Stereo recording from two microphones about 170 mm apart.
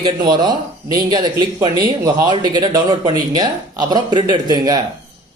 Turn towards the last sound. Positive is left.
turn(degrees=-25)  # may be behind; listen again after turning